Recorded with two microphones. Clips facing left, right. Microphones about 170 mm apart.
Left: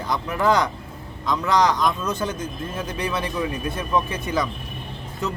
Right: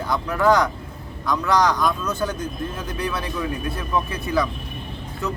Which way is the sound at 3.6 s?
20° left (ahead or behind).